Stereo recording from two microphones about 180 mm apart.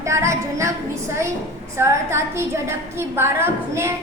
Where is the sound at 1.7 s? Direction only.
15° right (ahead or behind).